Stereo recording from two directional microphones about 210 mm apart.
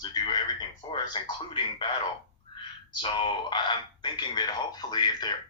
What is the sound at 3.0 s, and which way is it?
Speech, 20° left (ahead or behind).